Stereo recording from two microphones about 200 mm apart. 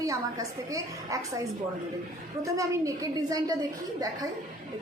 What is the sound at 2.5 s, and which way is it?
A woman's voice, 15° right (ahead or behind).